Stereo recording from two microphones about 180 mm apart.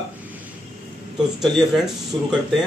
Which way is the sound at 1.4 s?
Centre (ahead or behind).